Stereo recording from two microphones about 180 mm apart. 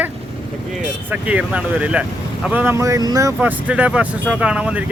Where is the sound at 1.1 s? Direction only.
10° right (ahead or behind).